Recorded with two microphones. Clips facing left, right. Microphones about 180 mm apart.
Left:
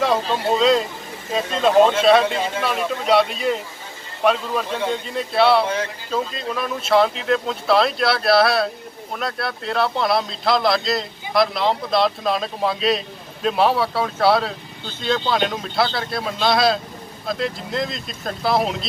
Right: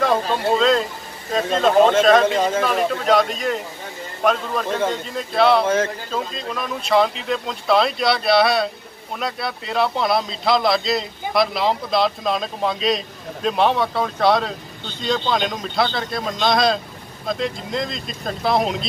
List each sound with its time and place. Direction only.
0.0 s speech: 5° left (ahead or behind)
2.2 s speech: 45° right (ahead or behind)
2.9 s speech: 5° left (ahead or behind)